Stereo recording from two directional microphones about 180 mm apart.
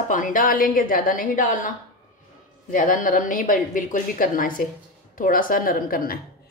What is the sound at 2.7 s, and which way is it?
Speech, 50° left (ahead or behind).